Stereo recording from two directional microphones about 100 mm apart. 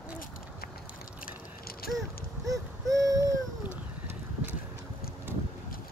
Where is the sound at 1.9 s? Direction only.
35° right (ahead or behind).